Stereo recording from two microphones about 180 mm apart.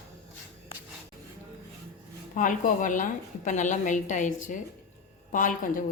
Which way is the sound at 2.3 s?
45° left (ahead or behind).